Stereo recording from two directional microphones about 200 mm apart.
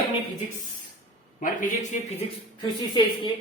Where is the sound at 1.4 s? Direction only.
40° left (ahead or behind).